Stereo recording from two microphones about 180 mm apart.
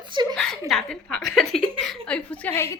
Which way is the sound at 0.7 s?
5° left (ahead or behind).